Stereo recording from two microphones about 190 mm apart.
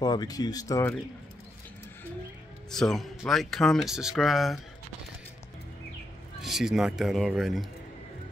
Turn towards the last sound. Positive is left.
turn(degrees=0)  # may be behind; listen again after turning